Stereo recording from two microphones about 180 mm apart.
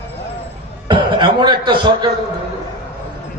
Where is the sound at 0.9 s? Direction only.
25° right (ahead or behind).